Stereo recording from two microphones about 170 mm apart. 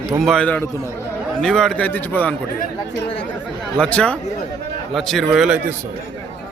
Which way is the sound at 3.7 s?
5° left (ahead or behind).